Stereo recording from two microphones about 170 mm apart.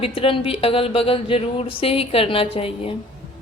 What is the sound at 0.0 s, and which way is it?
Speech, 35° left (ahead or behind).